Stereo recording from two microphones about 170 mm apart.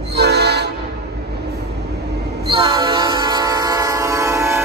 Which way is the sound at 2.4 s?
30° right (ahead or behind).